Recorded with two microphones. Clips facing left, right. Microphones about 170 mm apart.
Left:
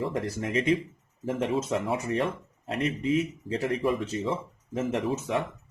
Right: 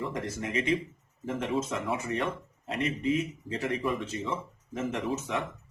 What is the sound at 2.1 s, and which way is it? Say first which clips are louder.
Speech: left 3 dB; 30° left (ahead or behind).